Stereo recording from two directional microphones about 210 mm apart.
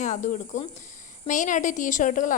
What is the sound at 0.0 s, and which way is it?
A woman's voice, 35° left (ahead or behind).